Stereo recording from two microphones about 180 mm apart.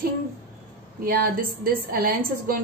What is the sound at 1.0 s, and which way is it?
A woman's voice, 55° right (ahead or behind).